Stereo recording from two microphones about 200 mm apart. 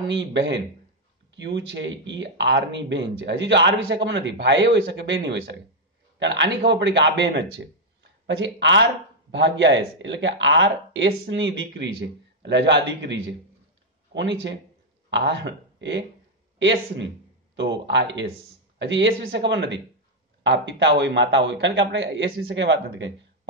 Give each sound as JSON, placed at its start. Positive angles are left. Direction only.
{"t": 0.1, "sound": "speech", "side_deg": -60}
{"t": 17.6, "sound": "speech", "side_deg": -60}